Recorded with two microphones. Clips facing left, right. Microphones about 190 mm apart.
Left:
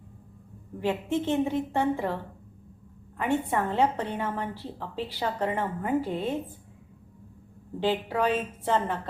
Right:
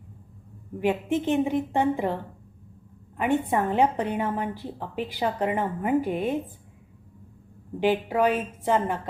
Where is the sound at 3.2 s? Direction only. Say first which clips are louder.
Right 3 dB; 15° right (ahead or behind).